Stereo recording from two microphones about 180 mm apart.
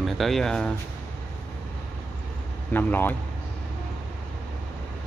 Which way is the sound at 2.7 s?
10° left (ahead or behind).